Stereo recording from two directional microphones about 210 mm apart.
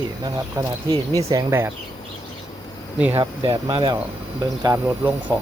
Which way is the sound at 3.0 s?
5° right (ahead or behind).